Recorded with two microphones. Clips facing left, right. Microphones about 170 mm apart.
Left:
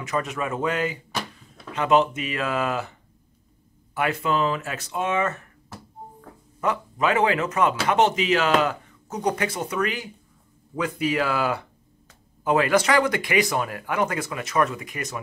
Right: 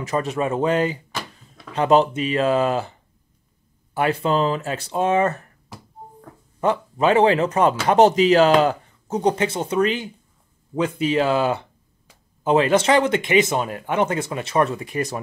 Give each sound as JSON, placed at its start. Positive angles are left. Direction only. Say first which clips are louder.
{"t": 0.0, "sound": "speech", "louder": "right 4 dB", "side_deg": -30}
{"t": 6.6, "sound": "speech", "louder": "right 5 dB", "side_deg": -30}